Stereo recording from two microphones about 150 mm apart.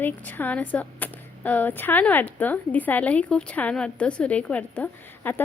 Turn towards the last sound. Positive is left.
turn(degrees=10)  # may be behind; listen again after turning